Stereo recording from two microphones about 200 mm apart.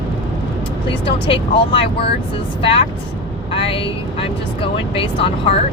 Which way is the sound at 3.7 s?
25° left (ahead or behind).